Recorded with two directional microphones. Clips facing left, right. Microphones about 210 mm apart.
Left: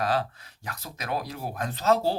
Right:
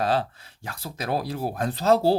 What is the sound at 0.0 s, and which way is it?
Speech, 30° right (ahead or behind).